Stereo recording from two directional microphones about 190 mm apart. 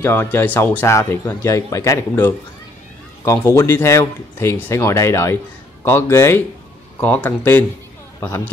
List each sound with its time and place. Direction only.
0.0 s speech: 10° left (ahead or behind)